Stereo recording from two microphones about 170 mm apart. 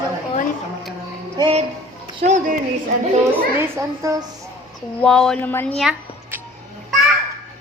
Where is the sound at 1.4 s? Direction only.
35° right (ahead or behind).